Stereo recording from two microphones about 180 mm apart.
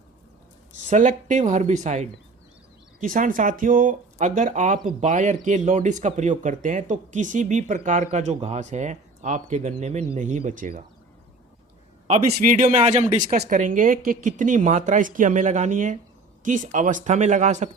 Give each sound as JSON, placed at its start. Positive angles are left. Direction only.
{"t": 0.9, "sound": "speech", "side_deg": -45}
{"t": 12.0, "sound": "speech", "side_deg": -45}